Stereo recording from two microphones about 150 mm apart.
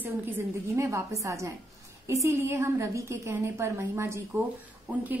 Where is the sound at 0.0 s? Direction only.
15° right (ahead or behind).